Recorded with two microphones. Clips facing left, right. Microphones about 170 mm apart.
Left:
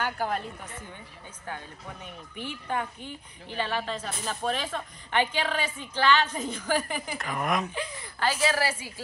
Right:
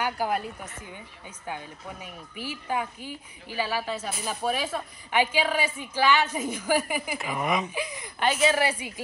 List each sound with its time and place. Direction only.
0.0 s a woman's voice: 10° right (ahead or behind)
7.7 s speech: 10° right (ahead or behind)